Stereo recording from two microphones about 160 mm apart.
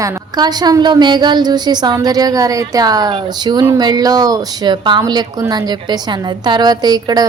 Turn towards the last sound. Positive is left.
turn(degrees=-25)  # may be behind; listen again after turning